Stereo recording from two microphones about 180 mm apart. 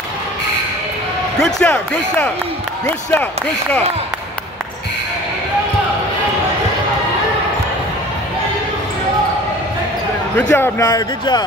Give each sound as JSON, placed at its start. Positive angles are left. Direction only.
{"t": 1.4, "sound": "speech", "side_deg": 5}
{"t": 10.5, "sound": "speech", "side_deg": 15}